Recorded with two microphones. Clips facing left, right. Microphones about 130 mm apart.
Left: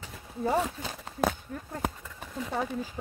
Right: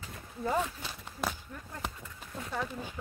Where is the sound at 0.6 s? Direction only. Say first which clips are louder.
Left 4 dB; 40° left (ahead or behind).